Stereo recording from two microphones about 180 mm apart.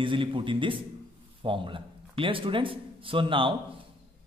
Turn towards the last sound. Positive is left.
turn(degrees=-30)  # may be behind; listen again after turning